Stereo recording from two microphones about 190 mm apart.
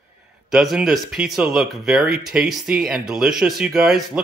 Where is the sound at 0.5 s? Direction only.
Centre (ahead or behind).